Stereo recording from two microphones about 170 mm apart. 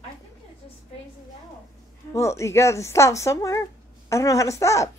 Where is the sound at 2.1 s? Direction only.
15° left (ahead or behind).